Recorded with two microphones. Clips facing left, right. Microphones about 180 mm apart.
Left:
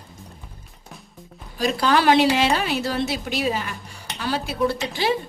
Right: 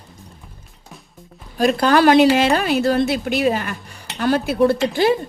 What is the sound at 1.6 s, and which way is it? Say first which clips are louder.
A woman's voice: right 5 dB; 55° right (ahead or behind).